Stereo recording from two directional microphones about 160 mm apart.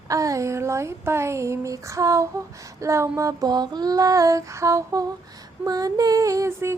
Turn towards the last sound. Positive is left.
turn(degrees=-15)  # may be behind; listen again after turning